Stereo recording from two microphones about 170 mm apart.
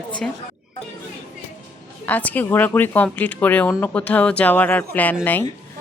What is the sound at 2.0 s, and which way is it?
Speech, 10° left (ahead or behind).